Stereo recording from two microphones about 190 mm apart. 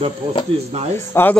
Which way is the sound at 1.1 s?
10° left (ahead or behind).